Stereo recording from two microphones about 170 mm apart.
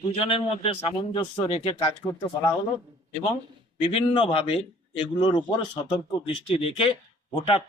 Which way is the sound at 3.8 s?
35° left (ahead or behind).